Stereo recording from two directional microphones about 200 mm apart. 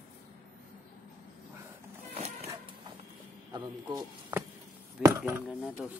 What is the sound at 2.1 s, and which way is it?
Music, 30° right (ahead or behind).